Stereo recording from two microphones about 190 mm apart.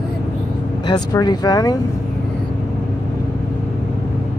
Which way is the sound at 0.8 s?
20° left (ahead or behind).